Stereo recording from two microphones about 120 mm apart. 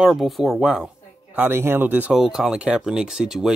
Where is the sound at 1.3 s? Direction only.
15° right (ahead or behind).